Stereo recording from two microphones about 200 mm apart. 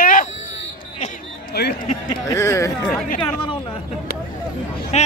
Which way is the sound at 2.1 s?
15° left (ahead or behind).